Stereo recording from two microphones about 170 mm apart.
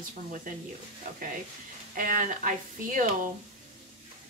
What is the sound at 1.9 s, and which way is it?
Speech, 55° right (ahead or behind).